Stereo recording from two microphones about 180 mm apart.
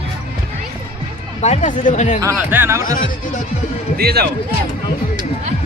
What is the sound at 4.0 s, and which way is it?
Speech, 60° right (ahead or behind).